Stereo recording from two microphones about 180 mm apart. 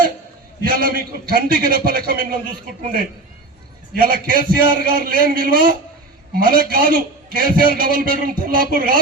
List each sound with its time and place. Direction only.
0.6 s a man's voice: 55° right (ahead or behind)
3.9 s a man's voice: 55° right (ahead or behind)